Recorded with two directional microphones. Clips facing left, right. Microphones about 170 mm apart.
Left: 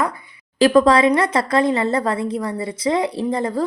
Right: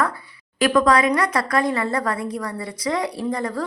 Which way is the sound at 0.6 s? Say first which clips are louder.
Left 4 dB; 30° left (ahead or behind).